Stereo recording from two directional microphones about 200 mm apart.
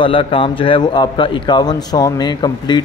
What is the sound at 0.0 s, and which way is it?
A man's voice, 25° left (ahead or behind).